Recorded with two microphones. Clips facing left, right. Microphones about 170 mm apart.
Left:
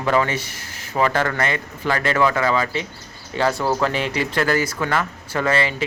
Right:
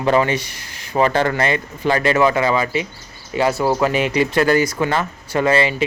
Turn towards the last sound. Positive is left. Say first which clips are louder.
# right 4 dB
turn(degrees=-20)  # may be behind; listen again after turning